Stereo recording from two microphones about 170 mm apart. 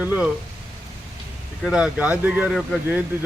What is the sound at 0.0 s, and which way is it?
Speech, 10° right (ahead or behind).